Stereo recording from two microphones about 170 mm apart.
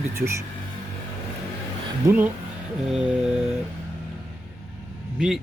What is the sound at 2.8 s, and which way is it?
Mantra, 5° right (ahead or behind).